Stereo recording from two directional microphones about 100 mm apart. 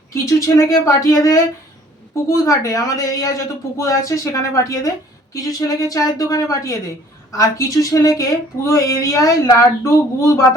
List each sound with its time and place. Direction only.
0.1 s speech: 35° left (ahead or behind)